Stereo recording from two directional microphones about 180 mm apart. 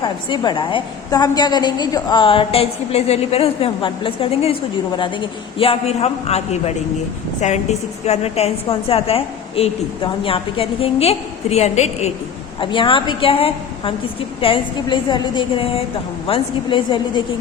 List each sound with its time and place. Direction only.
0.0 s a woman's voice: 25° left (ahead or behind)
12.5 s a woman's voice: 25° left (ahead or behind)